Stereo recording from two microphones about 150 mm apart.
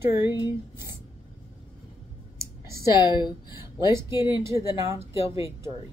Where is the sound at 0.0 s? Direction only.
15° right (ahead or behind).